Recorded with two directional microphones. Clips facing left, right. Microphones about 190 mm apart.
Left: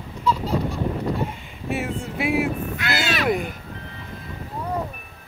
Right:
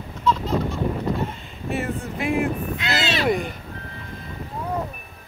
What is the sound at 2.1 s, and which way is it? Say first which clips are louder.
Speech: left 1 dB; 5° left (ahead or behind).